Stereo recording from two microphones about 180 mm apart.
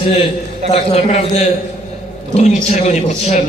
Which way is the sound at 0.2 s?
30° left (ahead or behind).